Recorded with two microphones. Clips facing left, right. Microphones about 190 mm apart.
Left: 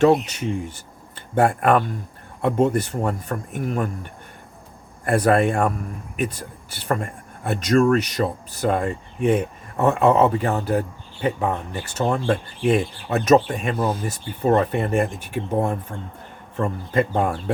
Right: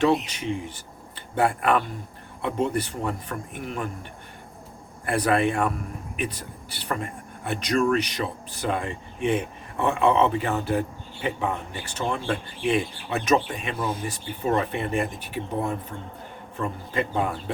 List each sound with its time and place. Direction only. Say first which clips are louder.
0.0 s speech: left 5 dB; 45° left (ahead or behind)
5.0 s speech: left 4 dB; 45° left (ahead or behind)